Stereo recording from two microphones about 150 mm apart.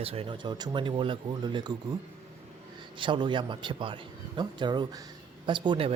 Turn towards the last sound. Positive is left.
turn(degrees=-35)  # may be behind; listen again after turning